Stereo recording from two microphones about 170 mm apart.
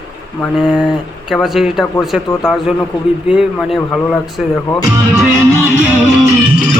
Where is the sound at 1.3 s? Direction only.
Centre (ahead or behind).